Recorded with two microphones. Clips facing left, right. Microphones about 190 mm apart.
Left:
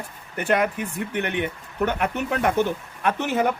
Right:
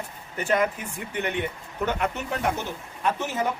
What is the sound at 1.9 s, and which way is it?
Speech, 60° left (ahead or behind).